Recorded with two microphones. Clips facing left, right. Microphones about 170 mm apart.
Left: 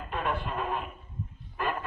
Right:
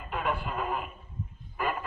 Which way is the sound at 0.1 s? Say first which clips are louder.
Even; 5° right (ahead or behind).